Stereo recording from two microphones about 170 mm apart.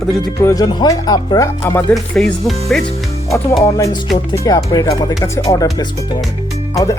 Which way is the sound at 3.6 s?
20° left (ahead or behind).